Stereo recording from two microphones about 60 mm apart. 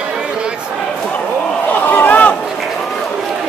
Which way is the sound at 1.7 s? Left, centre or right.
Left.